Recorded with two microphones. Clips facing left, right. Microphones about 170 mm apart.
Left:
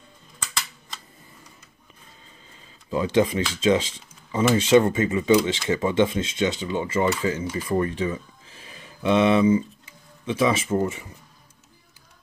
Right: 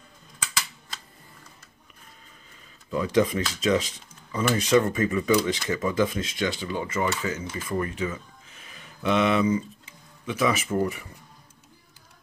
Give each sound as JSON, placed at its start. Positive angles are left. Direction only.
{"t": 2.9, "sound": "speech", "side_deg": 30}